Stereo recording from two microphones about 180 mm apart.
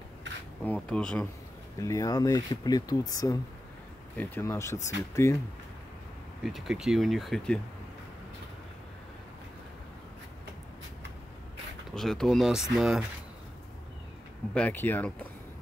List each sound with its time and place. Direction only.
0.7 s speech: 5° left (ahead or behind)
1.8 s speech: 15° left (ahead or behind)
6.4 s speech: centre (ahead or behind)
11.9 s speech: centre (ahead or behind)
14.5 s speech: 10° left (ahead or behind)